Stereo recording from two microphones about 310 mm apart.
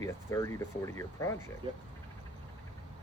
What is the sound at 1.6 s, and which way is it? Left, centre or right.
Speech, centre.